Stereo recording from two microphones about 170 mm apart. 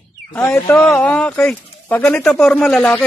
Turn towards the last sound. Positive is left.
turn(degrees=5)  # may be behind; listen again after turning